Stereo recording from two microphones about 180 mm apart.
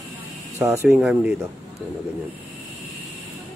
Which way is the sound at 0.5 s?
15° right (ahead or behind).